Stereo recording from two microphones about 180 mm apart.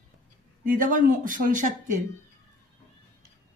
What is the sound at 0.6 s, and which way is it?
Speech, 45° right (ahead or behind).